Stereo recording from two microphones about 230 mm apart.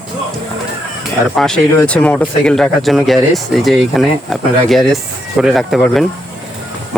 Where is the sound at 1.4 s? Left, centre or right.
Centre.